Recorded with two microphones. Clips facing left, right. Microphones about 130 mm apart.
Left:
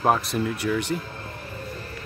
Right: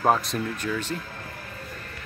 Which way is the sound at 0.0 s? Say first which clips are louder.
Left 1 dB; centre (ahead or behind).